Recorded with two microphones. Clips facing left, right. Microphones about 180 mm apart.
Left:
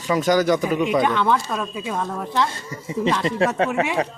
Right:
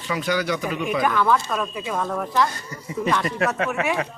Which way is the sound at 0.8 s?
25° left (ahead or behind).